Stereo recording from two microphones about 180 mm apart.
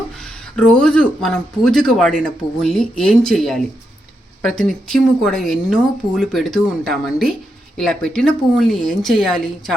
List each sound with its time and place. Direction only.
0.2 s speech: 5° left (ahead or behind)